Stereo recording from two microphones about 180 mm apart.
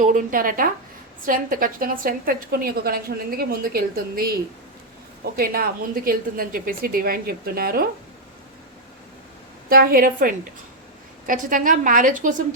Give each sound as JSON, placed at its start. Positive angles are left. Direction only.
{"t": 0.0, "sound": "a woman's voice", "side_deg": -50}
{"t": 9.6, "sound": "a woman's voice", "side_deg": -55}